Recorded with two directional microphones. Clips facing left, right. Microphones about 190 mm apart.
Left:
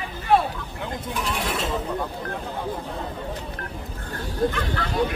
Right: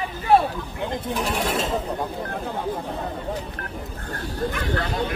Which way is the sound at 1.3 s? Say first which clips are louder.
Right 2 dB; 40° right (ahead or behind).